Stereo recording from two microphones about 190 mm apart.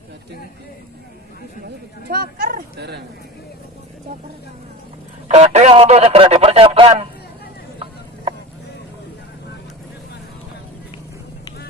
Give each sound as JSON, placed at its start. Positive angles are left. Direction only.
{"t": 2.0, "sound": "speech", "side_deg": -50}
{"t": 5.3, "sound": "speech", "side_deg": -35}